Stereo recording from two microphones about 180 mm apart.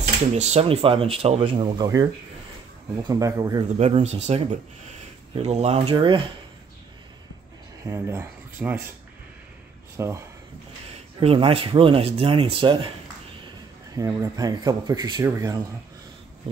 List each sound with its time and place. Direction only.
0.4 s speech: 35° right (ahead or behind)
3.0 s speech: 20° right (ahead or behind)
3.7 s speech: 40° right (ahead or behind)
7.8 s speech: 15° right (ahead or behind)
9.9 s speech: 15° right (ahead or behind)
11.1 s speech: 30° right (ahead or behind)
13.9 s speech: 20° right (ahead or behind)